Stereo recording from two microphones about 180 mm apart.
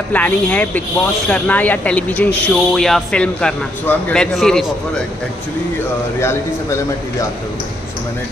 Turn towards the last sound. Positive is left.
turn(degrees=15)  # may be behind; listen again after turning